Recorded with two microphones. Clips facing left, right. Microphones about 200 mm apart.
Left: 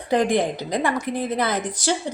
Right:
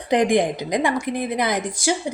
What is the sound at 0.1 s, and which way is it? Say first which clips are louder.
A woman's voice: right 2 dB; 15° right (ahead or behind).